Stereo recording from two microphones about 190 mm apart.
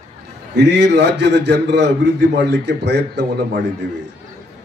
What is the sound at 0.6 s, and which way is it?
A man's voice, 60° right (ahead or behind).